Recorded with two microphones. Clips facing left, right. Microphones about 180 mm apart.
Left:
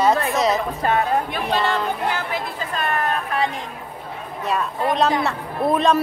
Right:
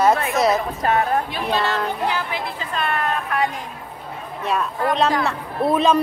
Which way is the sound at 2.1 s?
45° left (ahead or behind).